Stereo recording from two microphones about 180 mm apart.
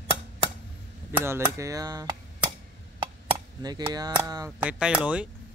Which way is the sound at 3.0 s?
25° right (ahead or behind).